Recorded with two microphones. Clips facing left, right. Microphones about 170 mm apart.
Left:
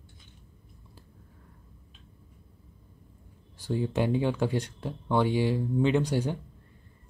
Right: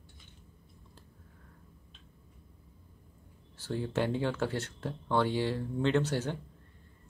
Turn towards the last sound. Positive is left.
turn(degrees=15)  # may be behind; listen again after turning